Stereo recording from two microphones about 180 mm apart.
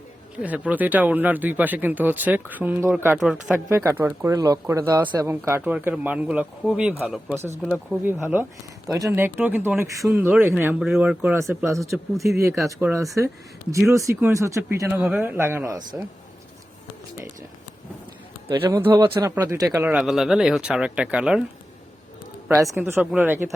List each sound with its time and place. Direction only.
0.3 s speech: 10° right (ahead or behind)
3.7 s speech: 15° right (ahead or behind)
18.4 s speech: 15° right (ahead or behind)
22.8 s speech: 10° right (ahead or behind)